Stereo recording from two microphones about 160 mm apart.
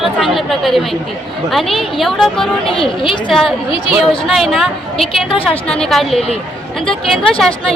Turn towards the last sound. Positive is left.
turn(degrees=0)  # may be behind; listen again after turning